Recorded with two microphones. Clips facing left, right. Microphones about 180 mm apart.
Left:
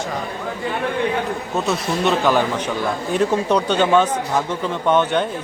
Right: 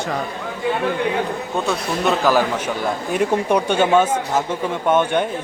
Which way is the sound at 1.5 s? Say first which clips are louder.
Left 1 dB; centre (ahead or behind).